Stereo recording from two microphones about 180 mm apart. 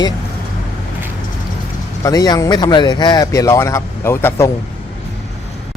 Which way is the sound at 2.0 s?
20° left (ahead or behind).